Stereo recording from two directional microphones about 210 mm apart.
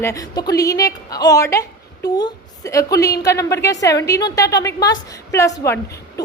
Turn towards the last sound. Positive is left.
turn(degrees=15)  # may be behind; listen again after turning